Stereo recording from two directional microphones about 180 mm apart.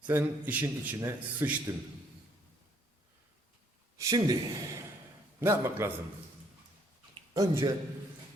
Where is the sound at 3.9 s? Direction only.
20° right (ahead or behind).